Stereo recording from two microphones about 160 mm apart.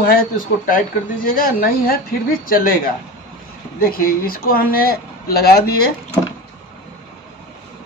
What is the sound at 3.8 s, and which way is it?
Speech, 65° left (ahead or behind).